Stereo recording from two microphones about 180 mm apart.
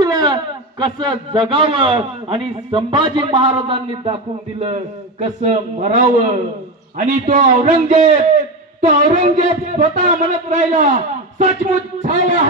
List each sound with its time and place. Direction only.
0.0 s a man's voice: 20° right (ahead or behind); by 12.4 s 40° right (ahead or behind)